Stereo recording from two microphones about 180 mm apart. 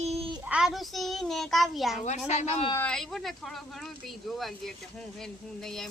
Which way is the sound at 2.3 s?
35° left (ahead or behind).